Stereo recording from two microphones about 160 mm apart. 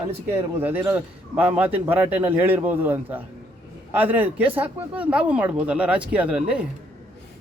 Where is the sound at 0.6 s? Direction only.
10° right (ahead or behind).